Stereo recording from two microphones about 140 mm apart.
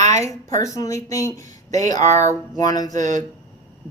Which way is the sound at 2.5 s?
25° left (ahead or behind).